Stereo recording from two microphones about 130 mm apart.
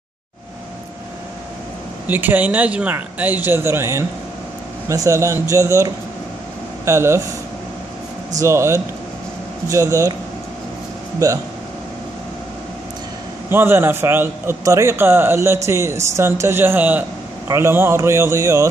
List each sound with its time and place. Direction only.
2.0 s a man's voice: 15° right (ahead or behind)
8.4 s speech: 20° right (ahead or behind)
11.2 s speech: 30° right (ahead or behind)
13.5 s a man's voice: 15° right (ahead or behind)